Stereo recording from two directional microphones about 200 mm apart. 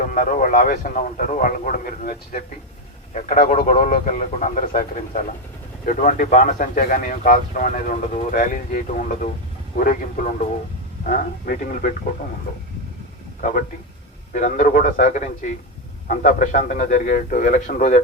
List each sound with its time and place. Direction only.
0.0 s speech: 40° left (ahead or behind)
3.2 s speech: 30° left (ahead or behind)
3.6 s speech: 40° left (ahead or behind)
13.4 s speech: 40° left (ahead or behind)